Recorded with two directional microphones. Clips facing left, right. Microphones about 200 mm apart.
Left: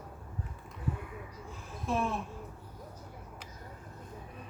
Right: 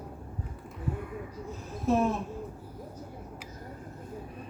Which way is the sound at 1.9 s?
40° right (ahead or behind).